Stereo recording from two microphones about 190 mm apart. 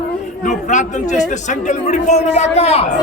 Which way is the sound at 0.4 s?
40° left (ahead or behind).